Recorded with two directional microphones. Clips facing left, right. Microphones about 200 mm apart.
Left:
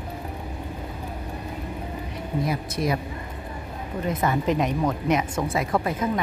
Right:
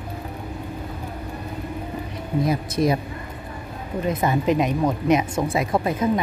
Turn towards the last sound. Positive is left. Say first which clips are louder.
# right 3 dB
turn(degrees=-20)  # may be behind; listen again after turning